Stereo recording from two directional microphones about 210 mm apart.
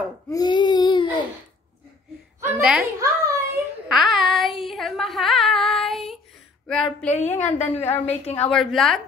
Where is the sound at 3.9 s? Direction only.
Centre (ahead or behind).